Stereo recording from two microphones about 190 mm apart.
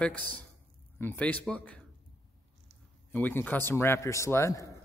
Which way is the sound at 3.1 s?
10° left (ahead or behind).